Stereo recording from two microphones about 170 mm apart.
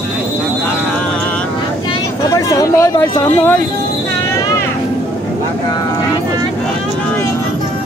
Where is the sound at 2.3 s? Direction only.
20° left (ahead or behind).